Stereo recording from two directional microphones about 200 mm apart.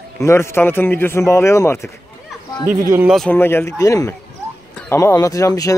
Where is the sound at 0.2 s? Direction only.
15° left (ahead or behind).